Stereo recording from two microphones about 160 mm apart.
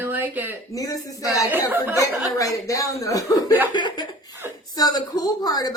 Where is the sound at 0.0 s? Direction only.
10° right (ahead or behind).